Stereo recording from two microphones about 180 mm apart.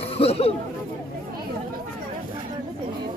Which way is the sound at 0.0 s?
35° left (ahead or behind).